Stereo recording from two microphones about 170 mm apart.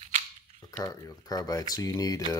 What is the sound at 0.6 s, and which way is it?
Speech, 20° left (ahead or behind).